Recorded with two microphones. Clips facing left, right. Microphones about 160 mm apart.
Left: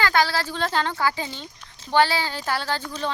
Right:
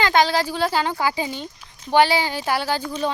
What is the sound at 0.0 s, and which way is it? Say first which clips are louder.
A woman's voice: right 3 dB; 20° right (ahead or behind).